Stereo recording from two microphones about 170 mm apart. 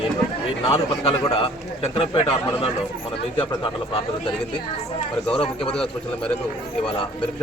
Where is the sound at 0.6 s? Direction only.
35° left (ahead or behind).